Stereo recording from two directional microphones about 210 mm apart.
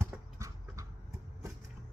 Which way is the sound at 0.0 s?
15° right (ahead or behind).